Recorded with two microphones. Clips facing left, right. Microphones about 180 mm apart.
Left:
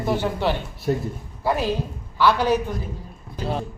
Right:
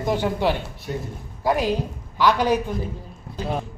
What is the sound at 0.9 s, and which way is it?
Speech, 45° left (ahead or behind).